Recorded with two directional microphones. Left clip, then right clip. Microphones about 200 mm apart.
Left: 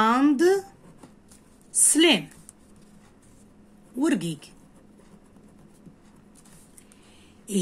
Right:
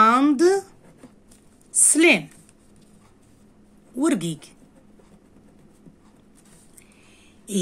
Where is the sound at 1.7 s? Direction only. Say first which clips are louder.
Right 3 dB; 20° right (ahead or behind).